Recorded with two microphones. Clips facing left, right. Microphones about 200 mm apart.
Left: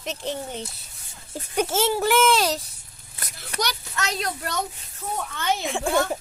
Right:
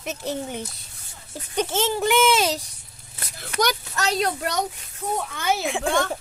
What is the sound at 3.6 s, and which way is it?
Speech, 50° right (ahead or behind).